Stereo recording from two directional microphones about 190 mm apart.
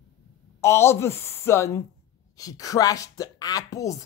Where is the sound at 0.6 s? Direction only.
15° left (ahead or behind).